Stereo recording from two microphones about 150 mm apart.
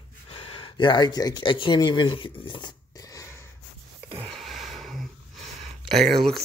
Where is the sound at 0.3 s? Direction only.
40° left (ahead or behind).